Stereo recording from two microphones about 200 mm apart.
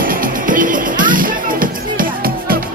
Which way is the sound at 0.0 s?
45° right (ahead or behind).